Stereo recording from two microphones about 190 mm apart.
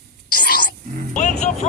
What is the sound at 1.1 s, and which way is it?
Speech, 40° left (ahead or behind).